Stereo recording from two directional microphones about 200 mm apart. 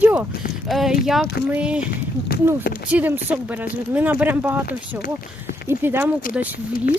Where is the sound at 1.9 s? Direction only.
50° left (ahead or behind).